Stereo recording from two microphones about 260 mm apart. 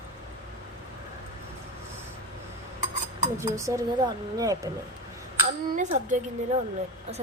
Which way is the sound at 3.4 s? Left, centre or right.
Centre.